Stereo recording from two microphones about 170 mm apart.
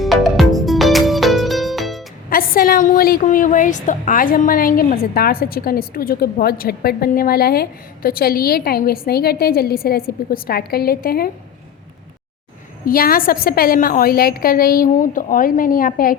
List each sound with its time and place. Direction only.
0.0 s music: centre (ahead or behind)
2.3 s a woman's voice: 60° left (ahead or behind)
12.8 s a woman's voice: 60° left (ahead or behind)